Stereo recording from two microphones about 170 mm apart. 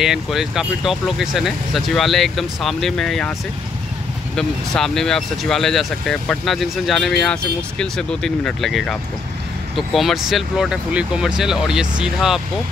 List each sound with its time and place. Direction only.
0.0 s speech: centre (ahead or behind)
4.4 s speech: 5° left (ahead or behind)